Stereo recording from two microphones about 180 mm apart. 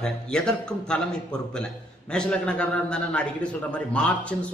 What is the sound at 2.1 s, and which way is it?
A man's voice, 5° left (ahead or behind).